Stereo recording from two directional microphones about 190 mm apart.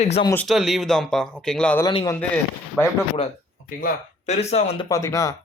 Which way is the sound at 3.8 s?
35° left (ahead or behind).